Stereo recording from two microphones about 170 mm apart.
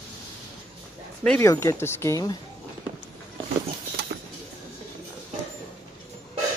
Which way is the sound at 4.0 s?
75° right (ahead or behind).